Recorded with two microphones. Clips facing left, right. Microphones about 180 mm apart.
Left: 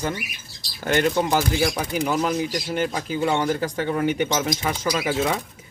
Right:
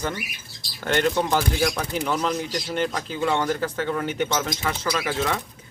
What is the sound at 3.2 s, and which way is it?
Speech, 20° left (ahead or behind).